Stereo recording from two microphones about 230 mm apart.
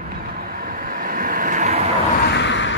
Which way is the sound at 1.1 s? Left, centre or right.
Right.